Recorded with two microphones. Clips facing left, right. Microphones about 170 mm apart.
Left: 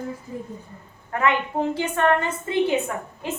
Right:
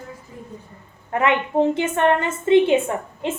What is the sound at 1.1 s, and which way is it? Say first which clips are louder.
A woman's voice: right 3 dB; 20° right (ahead or behind).